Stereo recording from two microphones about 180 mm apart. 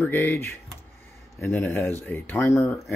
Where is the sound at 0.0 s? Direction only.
10° left (ahead or behind).